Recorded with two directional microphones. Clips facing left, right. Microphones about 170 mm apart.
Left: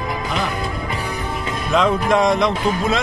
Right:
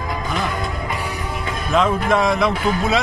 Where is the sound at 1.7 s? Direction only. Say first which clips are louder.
Left 1 dB; centre (ahead or behind).